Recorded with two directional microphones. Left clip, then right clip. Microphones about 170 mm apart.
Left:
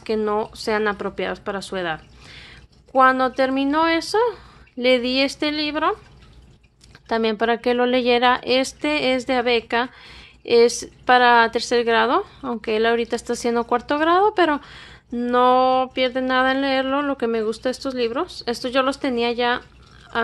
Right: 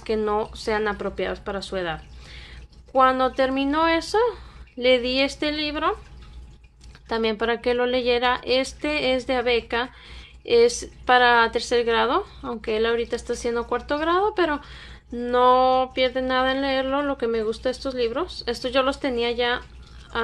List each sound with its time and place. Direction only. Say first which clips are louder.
0.0 s a woman's voice: left 2 dB; 30° left (ahead or behind)
7.1 s a woman's voice: left 3 dB; 30° left (ahead or behind)